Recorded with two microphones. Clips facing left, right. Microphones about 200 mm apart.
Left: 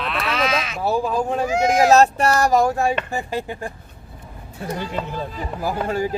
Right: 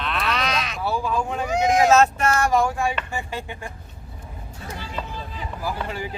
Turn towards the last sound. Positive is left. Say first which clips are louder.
# left 6 dB
turn(degrees=45)  # may be behind; listen again after turning